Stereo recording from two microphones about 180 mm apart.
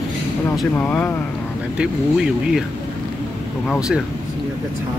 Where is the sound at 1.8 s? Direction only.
5° right (ahead or behind).